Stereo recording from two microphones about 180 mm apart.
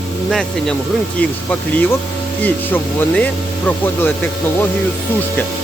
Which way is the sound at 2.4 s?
10° left (ahead or behind).